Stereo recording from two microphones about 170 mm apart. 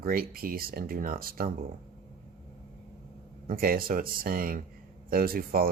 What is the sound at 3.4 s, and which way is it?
Speech, 60° right (ahead or behind).